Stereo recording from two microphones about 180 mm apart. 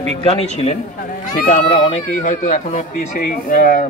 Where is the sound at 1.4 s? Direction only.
45° left (ahead or behind).